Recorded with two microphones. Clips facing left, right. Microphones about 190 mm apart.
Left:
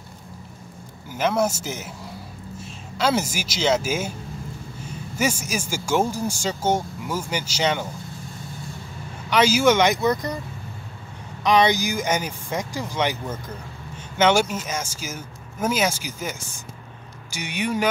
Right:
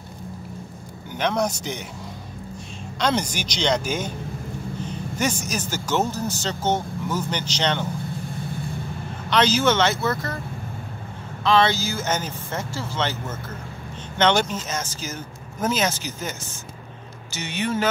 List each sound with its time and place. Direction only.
1.1 s a man's voice: 5° left (ahead or behind)
3.0 s speech: 5° left (ahead or behind)
5.1 s speech: 10° left (ahead or behind)
9.3 s speech: 10° left (ahead or behind)
11.4 s speech: 15° left (ahead or behind)